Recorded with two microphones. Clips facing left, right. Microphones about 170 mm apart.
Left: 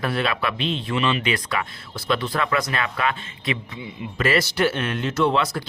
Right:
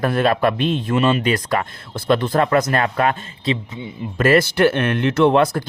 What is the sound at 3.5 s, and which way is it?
Speech, 30° right (ahead or behind).